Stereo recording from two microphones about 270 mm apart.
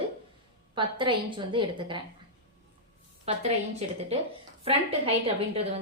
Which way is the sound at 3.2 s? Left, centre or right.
Right.